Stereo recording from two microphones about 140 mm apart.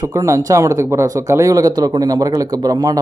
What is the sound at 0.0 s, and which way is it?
Speech, 20° right (ahead or behind).